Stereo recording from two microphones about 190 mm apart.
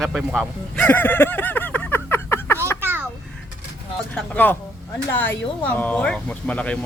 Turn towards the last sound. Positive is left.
turn(degrees=5)  # may be behind; listen again after turning